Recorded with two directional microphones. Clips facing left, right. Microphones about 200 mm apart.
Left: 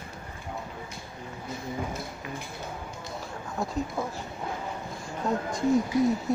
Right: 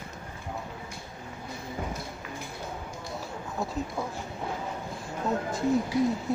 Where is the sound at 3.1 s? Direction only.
Centre (ahead or behind).